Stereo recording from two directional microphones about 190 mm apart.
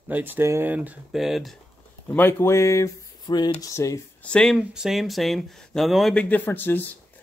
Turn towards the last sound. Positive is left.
turn(degrees=10)  # may be behind; listen again after turning